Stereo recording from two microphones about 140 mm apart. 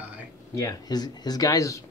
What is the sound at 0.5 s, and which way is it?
Speech, 25° left (ahead or behind).